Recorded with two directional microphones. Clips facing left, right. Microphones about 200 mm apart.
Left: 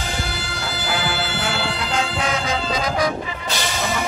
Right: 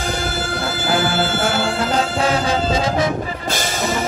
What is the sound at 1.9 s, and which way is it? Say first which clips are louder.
Music: right 4 dB; 35° right (ahead or behind).